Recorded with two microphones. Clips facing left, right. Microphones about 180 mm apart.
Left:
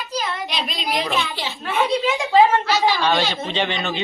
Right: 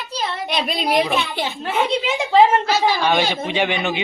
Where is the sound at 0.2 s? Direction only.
30° right (ahead or behind).